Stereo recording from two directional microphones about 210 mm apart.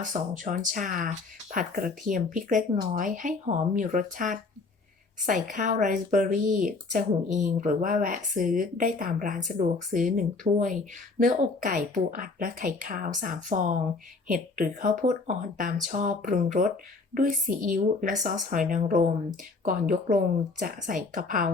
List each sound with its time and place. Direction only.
0.0 s speech: 35° right (ahead or behind)